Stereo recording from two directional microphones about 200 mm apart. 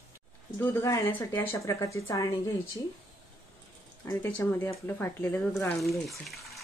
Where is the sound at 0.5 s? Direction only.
10° left (ahead or behind).